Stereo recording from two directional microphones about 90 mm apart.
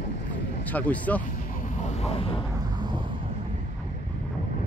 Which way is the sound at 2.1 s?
80° left.